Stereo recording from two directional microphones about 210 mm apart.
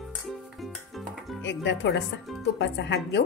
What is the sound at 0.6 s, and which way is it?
Music, centre (ahead or behind).